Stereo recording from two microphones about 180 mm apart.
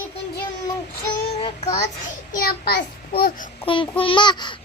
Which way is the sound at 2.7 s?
60° left (ahead or behind).